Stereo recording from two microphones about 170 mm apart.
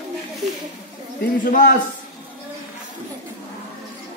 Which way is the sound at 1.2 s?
55° left (ahead or behind).